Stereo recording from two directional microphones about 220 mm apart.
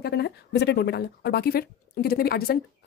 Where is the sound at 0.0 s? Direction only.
50° left (ahead or behind).